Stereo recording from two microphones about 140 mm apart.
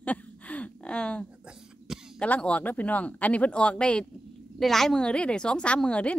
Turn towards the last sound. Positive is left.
turn(degrees=10)  # may be behind; listen again after turning